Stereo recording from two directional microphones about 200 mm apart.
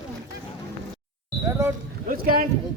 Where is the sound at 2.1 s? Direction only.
45° right (ahead or behind).